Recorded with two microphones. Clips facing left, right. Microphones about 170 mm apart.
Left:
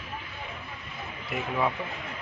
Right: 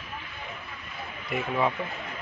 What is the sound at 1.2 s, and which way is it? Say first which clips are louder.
Speech: right 2 dB; centre (ahead or behind).